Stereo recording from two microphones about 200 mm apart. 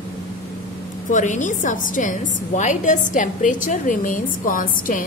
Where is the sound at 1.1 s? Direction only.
40° left (ahead or behind).